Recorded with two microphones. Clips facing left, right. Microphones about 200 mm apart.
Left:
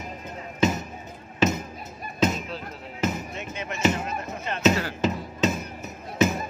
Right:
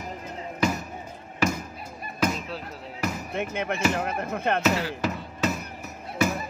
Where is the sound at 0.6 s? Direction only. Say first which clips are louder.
Left 3 dB; 20° left (ahead or behind).